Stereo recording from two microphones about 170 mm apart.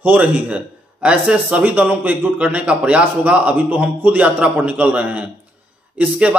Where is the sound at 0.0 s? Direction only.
10° right (ahead or behind).